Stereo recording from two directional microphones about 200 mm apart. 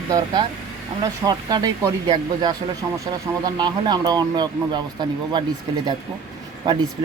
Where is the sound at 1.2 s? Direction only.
20° right (ahead or behind).